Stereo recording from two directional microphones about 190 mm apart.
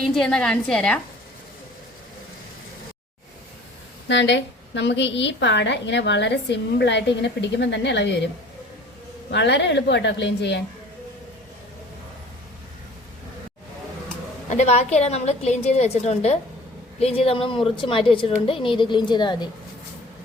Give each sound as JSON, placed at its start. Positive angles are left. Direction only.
{"t": 0.0, "sound": "a woman's voice", "side_deg": 5}
{"t": 4.1, "sound": "a woman's voice", "side_deg": 70}
{"t": 9.3, "sound": "a woman's voice", "side_deg": 65}
{"t": 14.5, "sound": "a woman's voice", "side_deg": 35}